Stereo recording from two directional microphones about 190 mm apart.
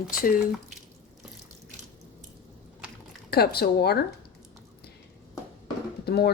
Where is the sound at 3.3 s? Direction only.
55° left (ahead or behind).